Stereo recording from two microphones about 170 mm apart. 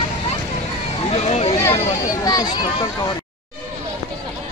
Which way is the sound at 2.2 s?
25° left (ahead or behind).